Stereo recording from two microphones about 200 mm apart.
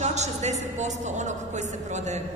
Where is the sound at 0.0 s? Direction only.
35° right (ahead or behind).